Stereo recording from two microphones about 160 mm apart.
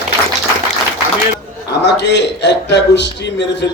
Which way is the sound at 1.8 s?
90° left.